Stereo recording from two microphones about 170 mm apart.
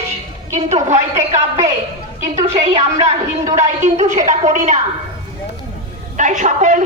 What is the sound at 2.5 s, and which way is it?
A woman's voice, 40° right (ahead or behind).